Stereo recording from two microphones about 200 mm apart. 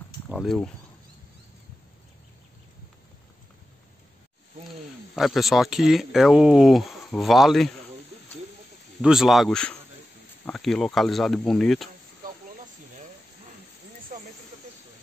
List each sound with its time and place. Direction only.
0.3 s speech: centre (ahead or behind)
5.1 s speech: centre (ahead or behind)
9.0 s speech: centre (ahead or behind)
14.1 s snake: 40° right (ahead or behind)